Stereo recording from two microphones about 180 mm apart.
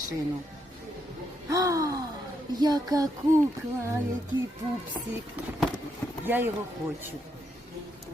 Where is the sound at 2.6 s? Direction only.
20° right (ahead or behind).